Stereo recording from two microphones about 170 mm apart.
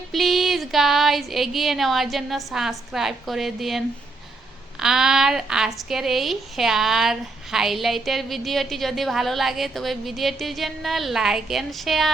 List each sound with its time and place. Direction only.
0.1 s a woman's voice: centre (ahead or behind)